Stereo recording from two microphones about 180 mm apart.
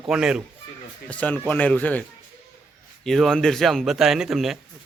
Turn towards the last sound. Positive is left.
turn(degrees=0)  # may be behind; listen again after turning